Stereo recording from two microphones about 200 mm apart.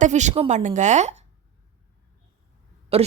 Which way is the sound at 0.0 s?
35° right (ahead or behind).